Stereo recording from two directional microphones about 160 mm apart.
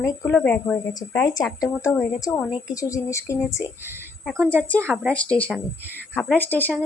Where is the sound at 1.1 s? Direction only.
20° left (ahead or behind).